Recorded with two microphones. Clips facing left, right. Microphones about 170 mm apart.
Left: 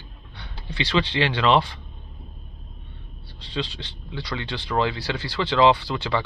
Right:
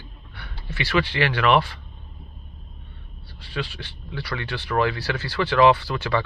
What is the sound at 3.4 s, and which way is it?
Speech, 20° left (ahead or behind).